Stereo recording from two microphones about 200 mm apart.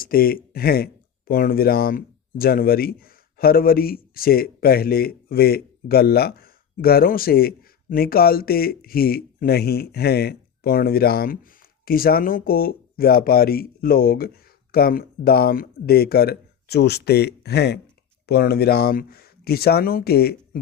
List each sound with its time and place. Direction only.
0.0 s speech: 45° left (ahead or behind)